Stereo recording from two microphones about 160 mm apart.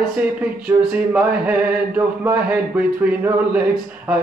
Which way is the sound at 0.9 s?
10° right (ahead or behind).